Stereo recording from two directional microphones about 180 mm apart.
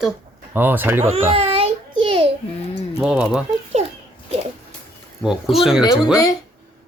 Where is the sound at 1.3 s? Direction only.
30° right (ahead or behind).